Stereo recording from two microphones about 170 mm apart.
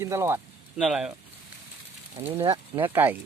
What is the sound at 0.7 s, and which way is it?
Speech, centre (ahead or behind).